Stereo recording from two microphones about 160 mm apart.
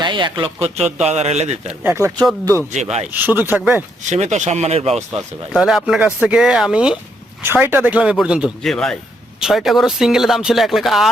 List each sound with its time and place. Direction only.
0.0 s a man's voice: 30° right (ahead or behind)
1.8 s speech: 15° right (ahead or behind)
2.7 s speech: 45° right (ahead or behind)
3.1 s speech: 10° right (ahead or behind)
4.0 s speech: 45° right (ahead or behind)
5.5 s speech: 5° right (ahead or behind)